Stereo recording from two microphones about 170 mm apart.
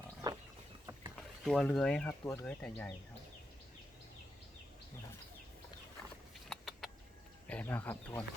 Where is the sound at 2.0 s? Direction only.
15° left (ahead or behind).